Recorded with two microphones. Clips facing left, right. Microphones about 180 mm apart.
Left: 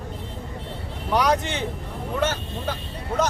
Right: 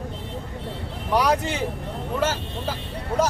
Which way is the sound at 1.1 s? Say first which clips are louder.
Even; 10° right (ahead or behind).